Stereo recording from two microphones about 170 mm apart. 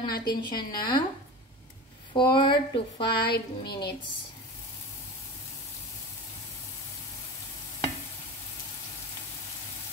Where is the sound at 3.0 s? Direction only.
70° left (ahead or behind).